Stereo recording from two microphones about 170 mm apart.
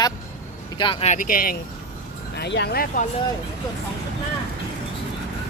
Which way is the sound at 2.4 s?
80° left.